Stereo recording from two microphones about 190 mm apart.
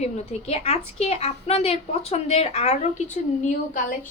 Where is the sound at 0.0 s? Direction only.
35° left (ahead or behind).